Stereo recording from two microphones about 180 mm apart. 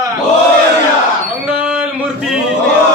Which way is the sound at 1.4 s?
5° right (ahead or behind).